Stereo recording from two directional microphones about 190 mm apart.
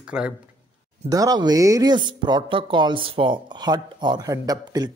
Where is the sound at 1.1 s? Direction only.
20° right (ahead or behind).